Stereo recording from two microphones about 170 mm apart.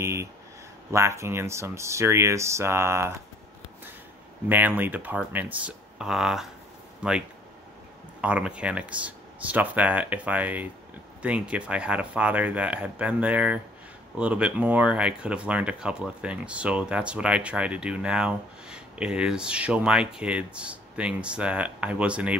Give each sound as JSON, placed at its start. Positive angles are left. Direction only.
{"t": 0.0, "sound": "a sound", "side_deg": -15}
{"t": 0.9, "sound": "speech", "side_deg": -15}
{"t": 4.5, "sound": "speech", "side_deg": -10}